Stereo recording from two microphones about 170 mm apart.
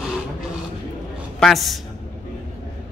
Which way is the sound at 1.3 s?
Centre (ahead or behind).